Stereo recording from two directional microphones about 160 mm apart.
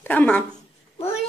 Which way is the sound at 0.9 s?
40° left (ahead or behind).